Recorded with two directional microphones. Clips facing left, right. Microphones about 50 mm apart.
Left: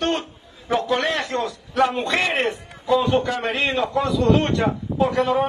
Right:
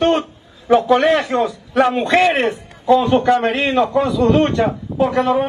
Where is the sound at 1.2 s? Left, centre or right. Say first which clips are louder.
Right 6 dB; centre.